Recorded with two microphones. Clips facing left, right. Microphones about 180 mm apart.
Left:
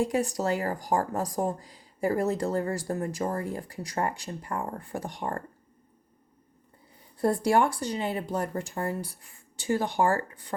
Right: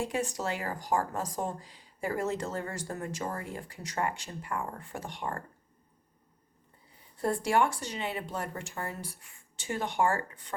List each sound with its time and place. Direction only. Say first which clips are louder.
0.0 s a woman's voice: left 6 dB; 40° left (ahead or behind)
7.2 s a woman's voice: left 4 dB; 35° left (ahead or behind)